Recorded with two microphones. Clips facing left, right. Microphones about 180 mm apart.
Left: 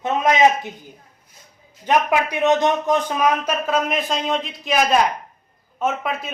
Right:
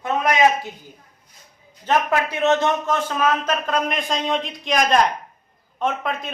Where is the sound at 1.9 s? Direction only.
15° left (ahead or behind).